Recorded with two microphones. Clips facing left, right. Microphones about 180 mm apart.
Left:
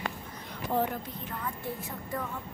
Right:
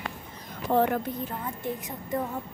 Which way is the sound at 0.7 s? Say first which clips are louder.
Right 6 dB; 70° right (ahead or behind).